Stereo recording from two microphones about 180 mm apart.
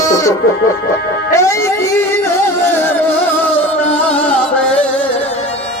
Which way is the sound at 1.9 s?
10° left (ahead or behind).